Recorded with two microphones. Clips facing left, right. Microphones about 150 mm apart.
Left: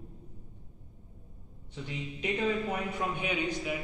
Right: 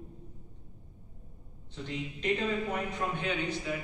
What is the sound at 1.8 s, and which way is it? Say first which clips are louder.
A man's voice: right 3 dB; 10° left (ahead or behind).